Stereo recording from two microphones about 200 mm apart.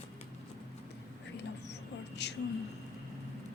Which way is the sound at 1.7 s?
60° left (ahead or behind).